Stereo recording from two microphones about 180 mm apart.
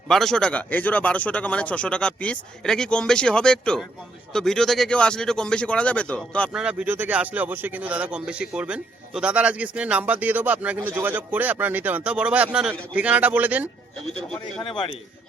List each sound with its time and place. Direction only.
0.1 s a man's voice: centre (ahead or behind)
6.6 s speech: 5° right (ahead or behind)
14.6 s a man's voice: 30° left (ahead or behind)